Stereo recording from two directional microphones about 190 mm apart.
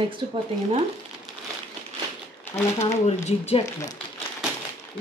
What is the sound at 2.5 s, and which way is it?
Speech, 35° left (ahead or behind).